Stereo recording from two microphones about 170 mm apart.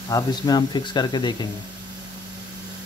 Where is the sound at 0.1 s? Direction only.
25° left (ahead or behind).